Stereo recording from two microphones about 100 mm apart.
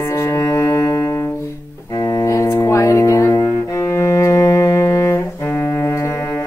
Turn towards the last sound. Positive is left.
turn(degrees=25)  # may be behind; listen again after turning